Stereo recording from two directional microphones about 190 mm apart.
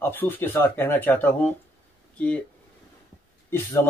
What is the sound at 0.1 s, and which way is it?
Speech, 10° left (ahead or behind).